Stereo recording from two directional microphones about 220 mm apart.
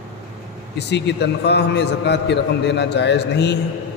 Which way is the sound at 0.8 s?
50° left (ahead or behind).